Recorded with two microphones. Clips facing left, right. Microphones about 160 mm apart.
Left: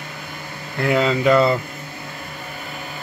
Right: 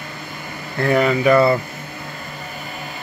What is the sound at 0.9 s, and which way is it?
Speech, 20° left (ahead or behind).